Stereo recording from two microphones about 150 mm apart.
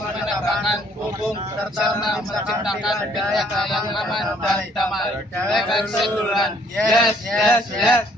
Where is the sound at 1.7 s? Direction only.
Centre (ahead or behind).